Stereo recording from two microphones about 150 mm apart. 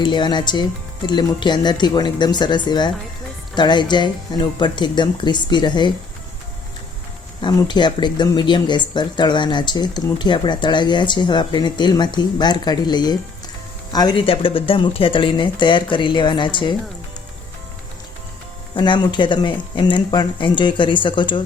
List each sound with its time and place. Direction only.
0.0 s speech: 30° left (ahead or behind)
7.4 s speech: 30° left (ahead or behind)
18.7 s speech: 30° left (ahead or behind)